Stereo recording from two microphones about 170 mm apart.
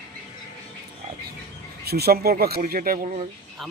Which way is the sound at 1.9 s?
70° right (ahead or behind).